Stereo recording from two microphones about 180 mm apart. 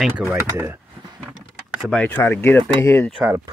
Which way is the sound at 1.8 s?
5° left (ahead or behind).